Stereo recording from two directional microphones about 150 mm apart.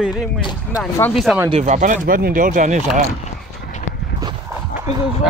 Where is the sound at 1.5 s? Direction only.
55° right (ahead or behind).